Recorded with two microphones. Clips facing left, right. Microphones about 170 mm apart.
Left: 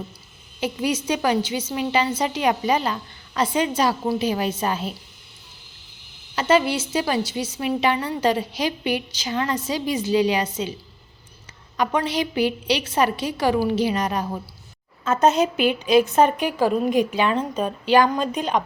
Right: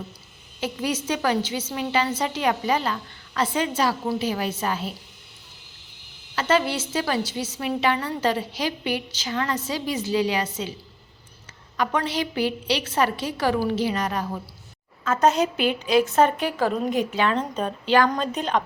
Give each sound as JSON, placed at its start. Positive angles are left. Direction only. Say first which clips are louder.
{"t": 0.6, "sound": "a woman's voice", "louder": "left 3 dB", "side_deg": 15}
{"t": 6.3, "sound": "a woman's voice", "louder": "left 3 dB", "side_deg": 15}
{"t": 11.8, "sound": "a woman's voice", "louder": "left 2 dB", "side_deg": 15}